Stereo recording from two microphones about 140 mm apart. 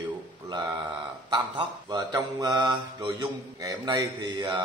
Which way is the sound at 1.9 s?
30° right (ahead or behind).